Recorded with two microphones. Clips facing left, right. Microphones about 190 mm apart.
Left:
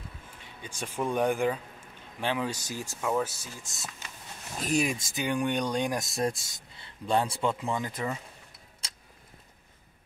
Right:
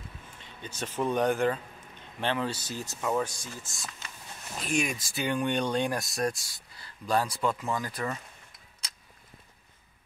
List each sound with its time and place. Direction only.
0.4 s speech: 10° left (ahead or behind)
4.6 s speech: 35° left (ahead or behind)
5.2 s speech: 10° left (ahead or behind)
6.0 s speech: 25° left (ahead or behind)